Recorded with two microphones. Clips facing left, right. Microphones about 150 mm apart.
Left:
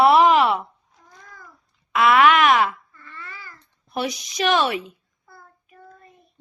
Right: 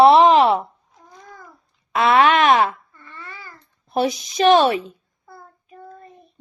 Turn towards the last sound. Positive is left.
turn(degrees=-30)  # may be behind; listen again after turning